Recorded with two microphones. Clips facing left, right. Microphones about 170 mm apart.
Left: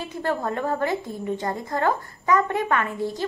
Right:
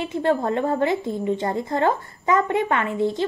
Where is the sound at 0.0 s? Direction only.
25° right (ahead or behind).